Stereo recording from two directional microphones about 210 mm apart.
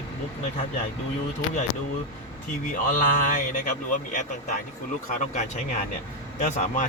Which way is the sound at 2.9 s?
40° left (ahead or behind).